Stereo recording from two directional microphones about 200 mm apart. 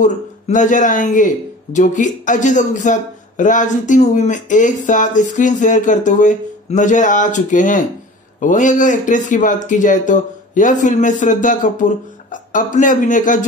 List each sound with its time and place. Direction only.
0.0 s speech: 40° left (ahead or behind)